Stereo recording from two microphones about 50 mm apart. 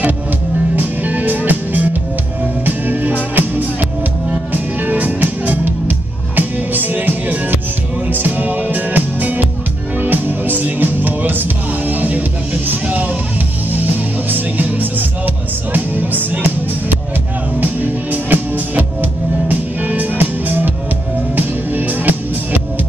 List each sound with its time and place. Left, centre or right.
0.7 s music: right
4.8 s music: right
14.3 s music: right
18.1 s music: right